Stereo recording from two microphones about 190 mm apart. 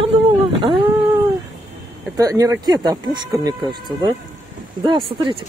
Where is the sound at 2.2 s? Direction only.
15° right (ahead or behind).